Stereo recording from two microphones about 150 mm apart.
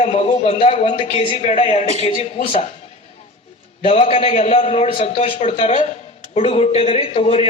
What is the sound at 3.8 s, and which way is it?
A man's voice, 45° left (ahead or behind).